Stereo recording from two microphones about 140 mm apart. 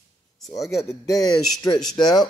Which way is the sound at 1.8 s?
5° left (ahead or behind).